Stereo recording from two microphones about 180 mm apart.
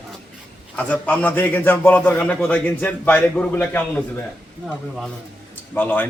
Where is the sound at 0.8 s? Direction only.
10° left (ahead or behind).